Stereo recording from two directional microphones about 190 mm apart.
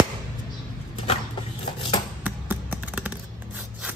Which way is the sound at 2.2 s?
10° right (ahead or behind).